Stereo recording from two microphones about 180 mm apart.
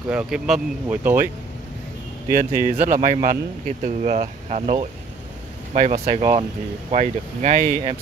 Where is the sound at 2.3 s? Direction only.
50° right (ahead or behind).